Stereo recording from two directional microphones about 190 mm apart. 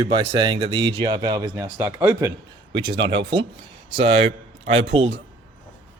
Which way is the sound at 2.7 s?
25° right (ahead or behind).